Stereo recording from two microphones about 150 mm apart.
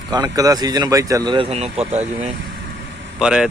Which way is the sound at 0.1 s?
25° right (ahead or behind).